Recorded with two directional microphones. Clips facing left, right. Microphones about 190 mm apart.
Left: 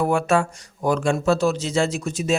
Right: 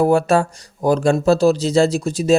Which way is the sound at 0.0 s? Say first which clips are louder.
Right 5 dB; 35° right (ahead or behind).